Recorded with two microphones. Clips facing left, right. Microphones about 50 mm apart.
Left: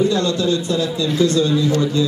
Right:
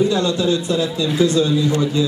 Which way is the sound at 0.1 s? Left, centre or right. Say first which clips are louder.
Even; centre.